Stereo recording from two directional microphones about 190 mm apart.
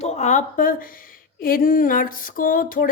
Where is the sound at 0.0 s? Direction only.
40° left (ahead or behind).